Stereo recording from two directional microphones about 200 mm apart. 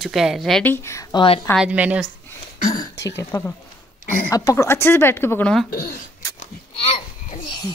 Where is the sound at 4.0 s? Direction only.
45° left (ahead or behind).